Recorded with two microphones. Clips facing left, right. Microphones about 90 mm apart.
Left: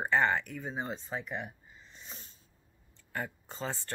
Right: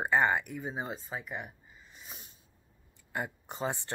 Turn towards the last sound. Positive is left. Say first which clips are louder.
# right 3 dB
turn(degrees=-20)  # may be behind; listen again after turning